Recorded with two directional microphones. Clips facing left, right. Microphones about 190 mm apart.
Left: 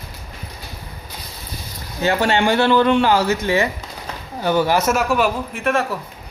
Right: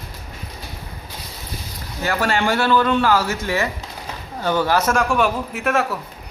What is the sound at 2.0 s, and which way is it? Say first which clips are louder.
A woman's voice: left 3 dB; 25° left (ahead or behind).